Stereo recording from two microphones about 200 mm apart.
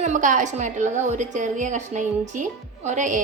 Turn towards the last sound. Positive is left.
turn(degrees=-40)  # may be behind; listen again after turning